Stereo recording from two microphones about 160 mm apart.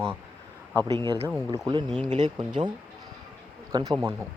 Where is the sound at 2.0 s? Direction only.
45° right (ahead or behind).